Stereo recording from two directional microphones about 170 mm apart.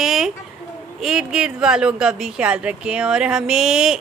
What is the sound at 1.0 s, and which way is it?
Speech, 5° right (ahead or behind).